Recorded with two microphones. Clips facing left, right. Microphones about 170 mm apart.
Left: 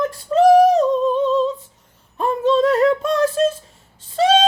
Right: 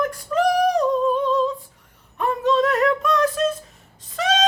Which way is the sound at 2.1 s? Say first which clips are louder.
Left 3 dB; 30° left (ahead or behind).